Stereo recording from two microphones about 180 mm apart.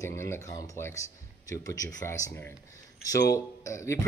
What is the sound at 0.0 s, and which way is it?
Speech, 15° left (ahead or behind).